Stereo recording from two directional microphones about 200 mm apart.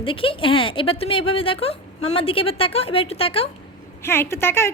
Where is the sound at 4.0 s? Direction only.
10° left (ahead or behind).